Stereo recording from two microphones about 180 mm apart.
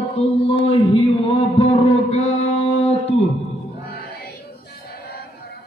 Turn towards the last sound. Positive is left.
turn(degrees=60)  # may be behind; listen again after turning